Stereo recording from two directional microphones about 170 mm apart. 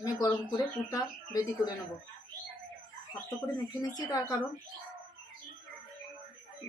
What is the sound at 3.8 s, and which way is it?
Speech, 20° left (ahead or behind).